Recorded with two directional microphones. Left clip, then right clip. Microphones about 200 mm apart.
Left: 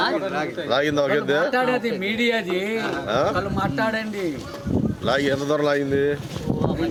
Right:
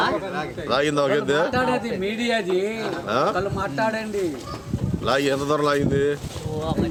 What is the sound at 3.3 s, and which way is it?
Speech, 30° left (ahead or behind).